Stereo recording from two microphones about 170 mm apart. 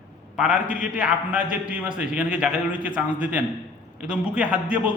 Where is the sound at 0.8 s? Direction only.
10° right (ahead or behind).